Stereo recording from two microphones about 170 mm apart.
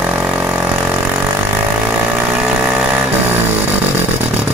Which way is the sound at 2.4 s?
5° right (ahead or behind).